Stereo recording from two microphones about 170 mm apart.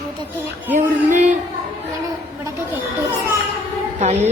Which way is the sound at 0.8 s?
45° right (ahead or behind).